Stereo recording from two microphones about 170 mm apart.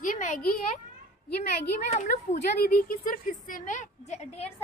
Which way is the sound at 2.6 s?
60° left (ahead or behind).